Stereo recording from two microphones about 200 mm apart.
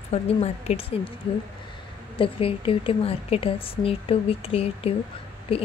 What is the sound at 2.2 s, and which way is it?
A woman's voice, 25° left (ahead or behind).